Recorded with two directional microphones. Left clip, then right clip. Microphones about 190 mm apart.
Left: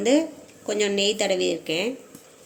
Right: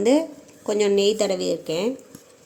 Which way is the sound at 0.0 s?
50° right (ahead or behind).